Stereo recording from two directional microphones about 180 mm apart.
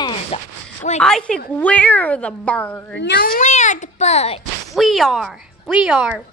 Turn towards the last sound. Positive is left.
turn(degrees=-5)  # may be behind; listen again after turning